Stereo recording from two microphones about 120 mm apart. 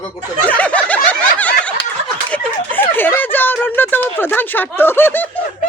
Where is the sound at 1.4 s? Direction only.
10° left (ahead or behind).